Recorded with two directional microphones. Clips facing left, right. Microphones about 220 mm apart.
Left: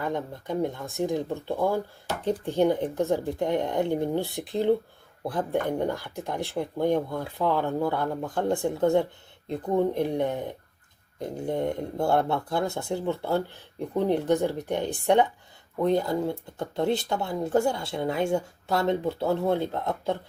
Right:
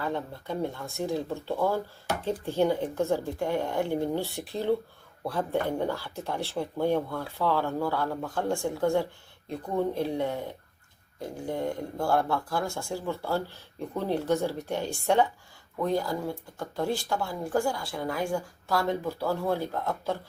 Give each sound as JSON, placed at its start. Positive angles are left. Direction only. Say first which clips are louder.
{"t": 0.0, "sound": "speech", "louder": "left 2 dB", "side_deg": 15}